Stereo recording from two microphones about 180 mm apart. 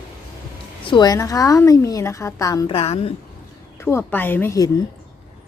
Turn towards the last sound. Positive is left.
turn(degrees=15)  # may be behind; listen again after turning